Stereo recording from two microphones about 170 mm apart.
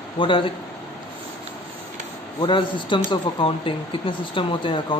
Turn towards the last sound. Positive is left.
turn(degrees=30)  # may be behind; listen again after turning